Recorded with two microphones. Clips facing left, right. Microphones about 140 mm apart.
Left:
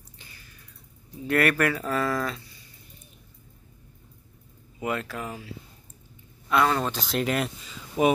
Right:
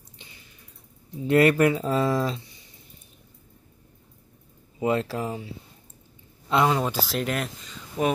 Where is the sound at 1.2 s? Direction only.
25° right (ahead or behind).